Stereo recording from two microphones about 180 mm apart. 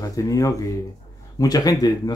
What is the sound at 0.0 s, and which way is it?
Speech, 20° left (ahead or behind).